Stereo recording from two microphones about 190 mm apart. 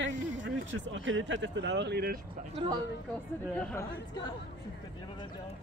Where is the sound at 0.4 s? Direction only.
75° right (ahead or behind); by 2.1 s 60° right (ahead or behind).